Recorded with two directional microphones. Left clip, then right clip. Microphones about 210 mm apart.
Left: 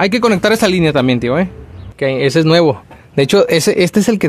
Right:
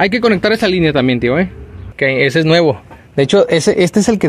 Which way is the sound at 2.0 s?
Centre (ahead or behind).